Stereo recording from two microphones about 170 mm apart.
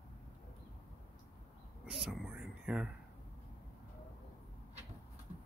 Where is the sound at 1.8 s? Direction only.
5° right (ahead or behind).